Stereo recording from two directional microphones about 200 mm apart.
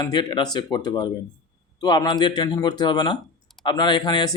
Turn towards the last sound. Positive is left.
turn(degrees=20)  # may be behind; listen again after turning